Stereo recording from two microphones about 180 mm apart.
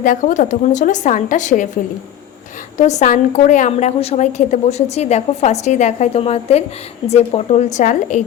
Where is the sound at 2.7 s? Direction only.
40° left (ahead or behind).